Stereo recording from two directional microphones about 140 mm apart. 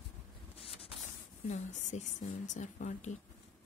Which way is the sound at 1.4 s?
55° left (ahead or behind).